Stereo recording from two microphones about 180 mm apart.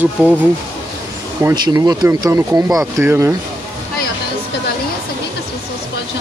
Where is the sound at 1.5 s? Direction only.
20° right (ahead or behind).